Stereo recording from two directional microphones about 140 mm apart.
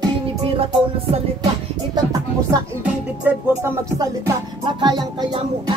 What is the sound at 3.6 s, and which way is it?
Music, 20° right (ahead or behind).